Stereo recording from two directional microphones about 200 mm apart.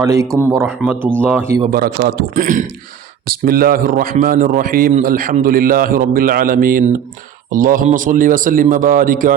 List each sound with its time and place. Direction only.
0.0 s speech: 15° right (ahead or behind)
1.7 s a man's voice: 50° right (ahead or behind)